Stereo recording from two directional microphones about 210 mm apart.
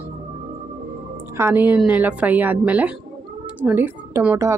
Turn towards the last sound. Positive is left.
turn(degrees=-10)  # may be behind; listen again after turning